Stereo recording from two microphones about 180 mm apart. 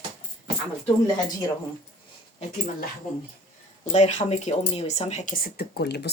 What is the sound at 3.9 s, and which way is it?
Speech, 40° left (ahead or behind).